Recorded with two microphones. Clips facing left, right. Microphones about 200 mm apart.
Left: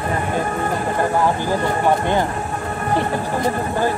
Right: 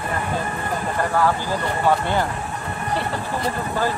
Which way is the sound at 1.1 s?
15° left (ahead or behind).